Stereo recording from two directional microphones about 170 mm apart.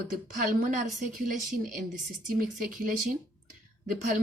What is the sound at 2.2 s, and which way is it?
Speech, 55° right (ahead or behind).